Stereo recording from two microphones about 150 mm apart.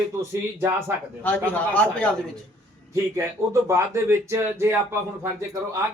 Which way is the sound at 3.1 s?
20° right (ahead or behind).